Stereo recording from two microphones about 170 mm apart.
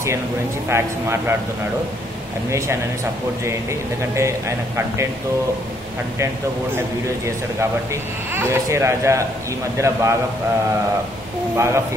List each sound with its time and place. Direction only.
0.7 s speech: 15° right (ahead or behind)
4.1 s speech: 15° right (ahead or behind)
7.9 s speech: 15° right (ahead or behind)
11.5 s speech: 15° right (ahead or behind)